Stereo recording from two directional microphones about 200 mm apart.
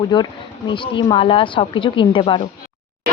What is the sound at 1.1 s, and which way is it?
Speech, 25° left (ahead or behind).